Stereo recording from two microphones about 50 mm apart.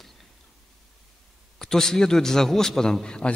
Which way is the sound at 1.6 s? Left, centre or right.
Centre.